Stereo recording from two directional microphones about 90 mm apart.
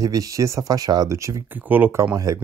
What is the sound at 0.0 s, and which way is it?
Speech, 40° right (ahead or behind).